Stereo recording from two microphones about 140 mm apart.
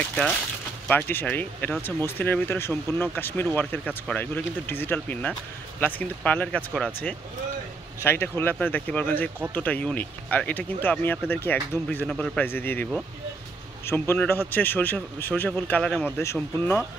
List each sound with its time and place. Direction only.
0.0 s speech: 5° left (ahead or behind)
13.8 s speech: 15° left (ahead or behind)